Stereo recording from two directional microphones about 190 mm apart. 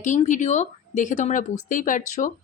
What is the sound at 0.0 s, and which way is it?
A woman's voice, 40° left (ahead or behind).